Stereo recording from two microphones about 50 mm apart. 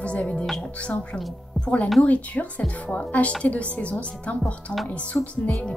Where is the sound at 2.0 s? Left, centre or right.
Left.